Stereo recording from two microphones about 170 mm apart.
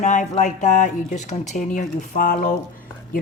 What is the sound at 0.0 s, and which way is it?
Speech, 45° left (ahead or behind).